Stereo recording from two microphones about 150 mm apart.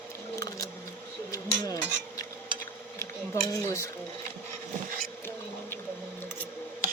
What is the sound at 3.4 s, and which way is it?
Speech, 20° left (ahead or behind).